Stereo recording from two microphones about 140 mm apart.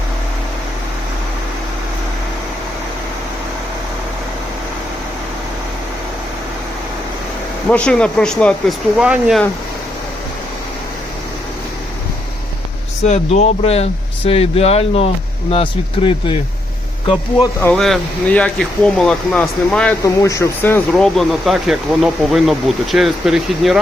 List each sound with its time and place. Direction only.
7.7 s speech: 5° left (ahead or behind)
9.0 s speech: 5° right (ahead or behind)
13.1 s speech: 50° left (ahead or behind)
17.6 s speech: 5° left (ahead or behind)
20.2 s speech: 20° left (ahead or behind)
20.9 s speech: centre (ahead or behind)